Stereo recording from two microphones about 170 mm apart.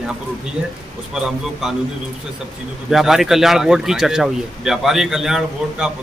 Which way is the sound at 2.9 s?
Centre (ahead or behind).